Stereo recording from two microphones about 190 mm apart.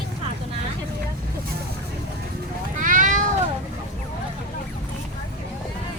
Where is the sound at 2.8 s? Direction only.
45° right (ahead or behind).